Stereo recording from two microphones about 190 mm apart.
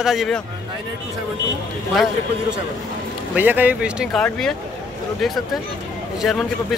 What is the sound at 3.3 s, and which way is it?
Speech, 10° right (ahead or behind).